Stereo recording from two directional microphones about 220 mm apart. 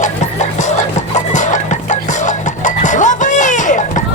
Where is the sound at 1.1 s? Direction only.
35° left (ahead or behind).